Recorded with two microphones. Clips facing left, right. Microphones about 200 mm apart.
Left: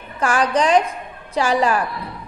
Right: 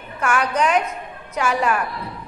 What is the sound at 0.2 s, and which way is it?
A woman's voice, 35° left (ahead or behind).